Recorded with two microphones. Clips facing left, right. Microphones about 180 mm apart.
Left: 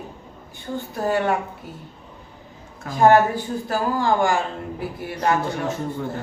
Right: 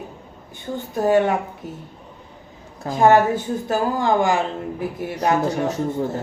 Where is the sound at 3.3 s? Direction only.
20° right (ahead or behind).